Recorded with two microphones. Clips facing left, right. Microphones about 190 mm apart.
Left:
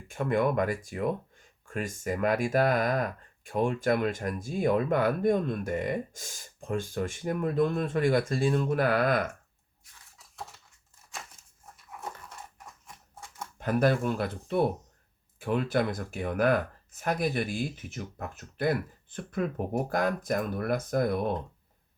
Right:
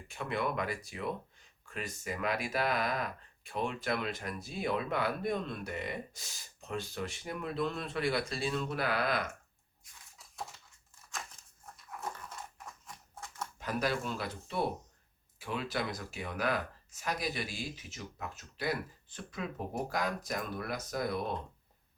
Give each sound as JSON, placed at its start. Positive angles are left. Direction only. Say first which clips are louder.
{"t": 0.1, "sound": "speech", "louder": "left 8 dB", "side_deg": 50}
{"t": 13.6, "sound": "speech", "louder": "left 9 dB", "side_deg": 55}